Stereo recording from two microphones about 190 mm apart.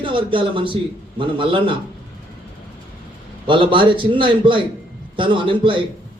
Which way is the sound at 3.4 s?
25° right (ahead or behind).